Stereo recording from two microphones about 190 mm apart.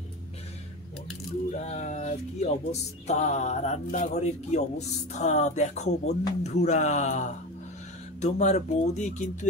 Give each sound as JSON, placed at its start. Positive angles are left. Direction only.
{"t": 1.6, "sound": "speech", "side_deg": 40}